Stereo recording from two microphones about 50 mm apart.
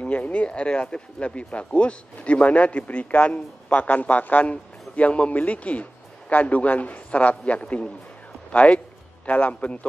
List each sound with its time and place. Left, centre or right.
0.0 s speech: left
7.6 s a man's voice: centre